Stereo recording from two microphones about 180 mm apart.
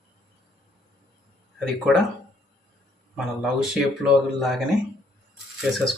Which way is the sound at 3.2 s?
5° right (ahead or behind).